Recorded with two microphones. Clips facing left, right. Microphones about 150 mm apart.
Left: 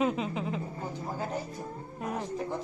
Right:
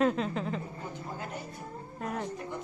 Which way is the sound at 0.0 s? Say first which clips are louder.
Right 1 dB; 5° left (ahead or behind).